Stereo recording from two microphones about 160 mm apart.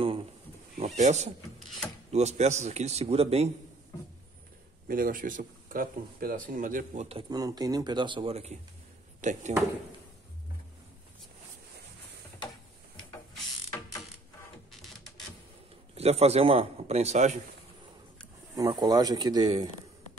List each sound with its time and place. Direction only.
0.7 s a man's voice: 45° right (ahead or behind)
4.8 s speech: 60° right (ahead or behind)
7.1 s a man's voice: 35° right (ahead or behind)
7.3 s a man's voice: 25° right (ahead or behind); by 9.5 s 50° right (ahead or behind)
14.7 s printer: centre (ahead or behind)
15.9 s a man's voice: 40° right (ahead or behind)
18.6 s speech: 25° right (ahead or behind)